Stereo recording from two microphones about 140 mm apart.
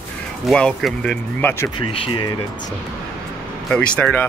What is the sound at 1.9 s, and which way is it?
Speech, 40° left (ahead or behind).